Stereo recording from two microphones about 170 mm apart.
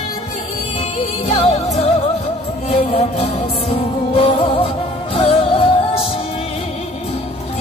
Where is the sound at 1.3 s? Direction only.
35° left (ahead or behind).